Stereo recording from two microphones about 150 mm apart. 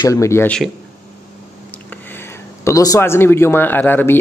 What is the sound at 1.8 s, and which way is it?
Speech, 15° left (ahead or behind).